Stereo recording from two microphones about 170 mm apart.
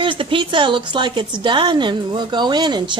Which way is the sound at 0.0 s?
30° right (ahead or behind).